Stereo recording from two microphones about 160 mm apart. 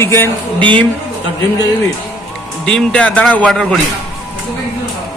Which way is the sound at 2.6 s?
5° left (ahead or behind).